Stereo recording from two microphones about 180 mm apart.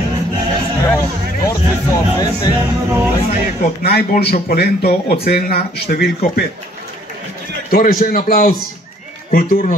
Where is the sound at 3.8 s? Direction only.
55° left (ahead or behind).